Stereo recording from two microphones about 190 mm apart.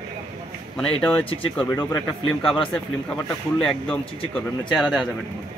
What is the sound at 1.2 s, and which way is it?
Speech, 30° left (ahead or behind).